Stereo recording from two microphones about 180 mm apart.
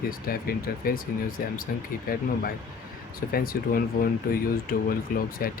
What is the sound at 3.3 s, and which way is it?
Speech, 55° left (ahead or behind).